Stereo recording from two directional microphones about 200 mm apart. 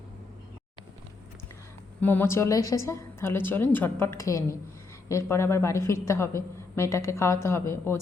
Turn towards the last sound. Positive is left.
turn(degrees=10)  # may be behind; listen again after turning